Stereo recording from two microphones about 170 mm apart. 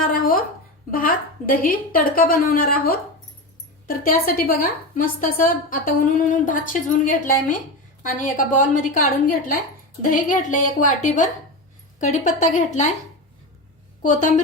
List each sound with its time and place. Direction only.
0.0 s a sound: 55° left (ahead or behind)
0.9 s a woman's voice: 55° left (ahead or behind)
14.0 s a woman's voice: 45° left (ahead or behind)